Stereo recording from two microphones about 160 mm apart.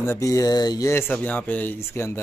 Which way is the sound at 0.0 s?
20° left (ahead or behind).